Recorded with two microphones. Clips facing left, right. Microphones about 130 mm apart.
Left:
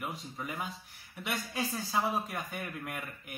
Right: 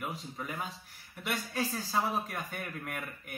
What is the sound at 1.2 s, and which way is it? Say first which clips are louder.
A man's voice: right 1 dB; 5° left (ahead or behind).